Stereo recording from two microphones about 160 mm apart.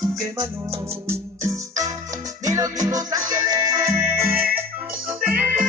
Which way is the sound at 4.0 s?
10° right (ahead or behind).